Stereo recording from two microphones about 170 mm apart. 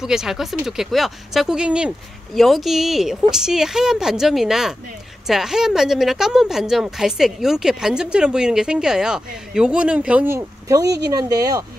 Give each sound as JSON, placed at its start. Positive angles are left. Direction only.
{"t": 0.0, "sound": "speech", "side_deg": -5}